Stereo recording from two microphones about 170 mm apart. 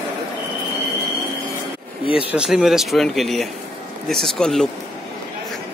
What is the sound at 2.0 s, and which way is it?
Speech, 35° left (ahead or behind).